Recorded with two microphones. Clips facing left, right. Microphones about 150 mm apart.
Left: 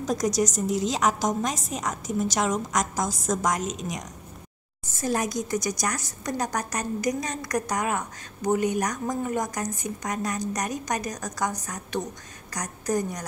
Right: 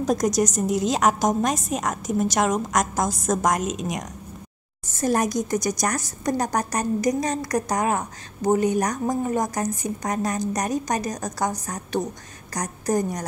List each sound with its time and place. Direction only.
0.0 s a woman's voice: 50° right (ahead or behind)
5.0 s a woman's voice: 45° right (ahead or behind)